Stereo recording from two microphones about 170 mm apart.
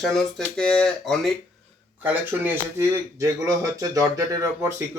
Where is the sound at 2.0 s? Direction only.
10° right (ahead or behind).